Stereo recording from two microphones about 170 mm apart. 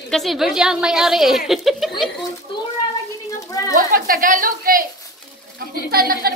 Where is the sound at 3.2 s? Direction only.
20° left (ahead or behind).